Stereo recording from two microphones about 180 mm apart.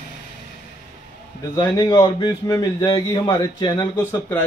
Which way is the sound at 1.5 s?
20° left (ahead or behind).